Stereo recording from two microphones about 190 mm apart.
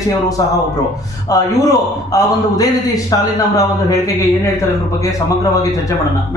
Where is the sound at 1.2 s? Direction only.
20° left (ahead or behind).